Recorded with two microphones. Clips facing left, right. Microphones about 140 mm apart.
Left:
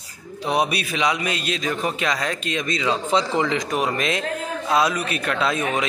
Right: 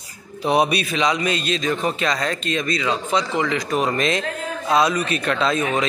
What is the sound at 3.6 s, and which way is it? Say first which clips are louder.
A man's voice: right 2 dB; 10° left (ahead or behind).